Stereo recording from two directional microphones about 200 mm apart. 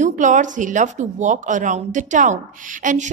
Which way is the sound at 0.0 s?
40° right (ahead or behind).